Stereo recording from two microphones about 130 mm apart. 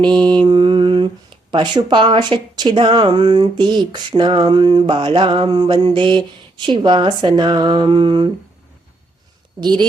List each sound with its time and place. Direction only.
0.0 s speech: 35° right (ahead or behind)
9.6 s speech: 35° right (ahead or behind)